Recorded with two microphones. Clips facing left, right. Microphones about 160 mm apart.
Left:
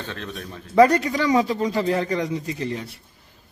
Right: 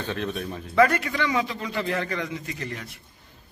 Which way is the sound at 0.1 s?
15° right (ahead or behind).